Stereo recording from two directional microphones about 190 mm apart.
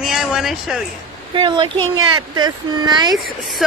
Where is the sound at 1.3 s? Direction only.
25° right (ahead or behind).